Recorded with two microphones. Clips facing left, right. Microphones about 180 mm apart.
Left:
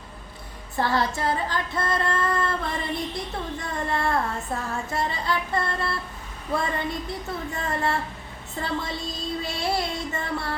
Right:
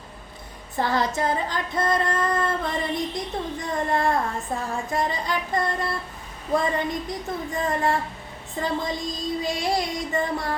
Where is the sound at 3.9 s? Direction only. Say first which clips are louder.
Right 3 dB; 20° right (ahead or behind).